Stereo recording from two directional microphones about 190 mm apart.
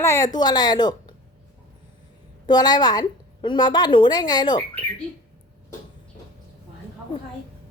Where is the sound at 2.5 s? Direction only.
20° left (ahead or behind).